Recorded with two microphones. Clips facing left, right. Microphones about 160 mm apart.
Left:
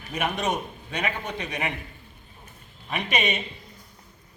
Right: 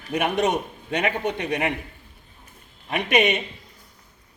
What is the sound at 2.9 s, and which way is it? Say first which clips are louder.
Speech: right 6 dB; 65° right (ahead or behind).